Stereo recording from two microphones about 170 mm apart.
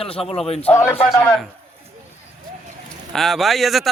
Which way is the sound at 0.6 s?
15° left (ahead or behind).